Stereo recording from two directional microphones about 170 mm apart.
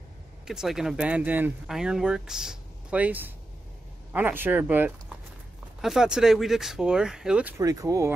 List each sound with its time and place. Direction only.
0.5 s speech: 5° right (ahead or behind)
7.5 s speech: 20° right (ahead or behind)